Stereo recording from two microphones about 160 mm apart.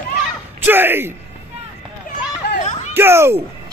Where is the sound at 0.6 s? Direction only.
10° right (ahead or behind).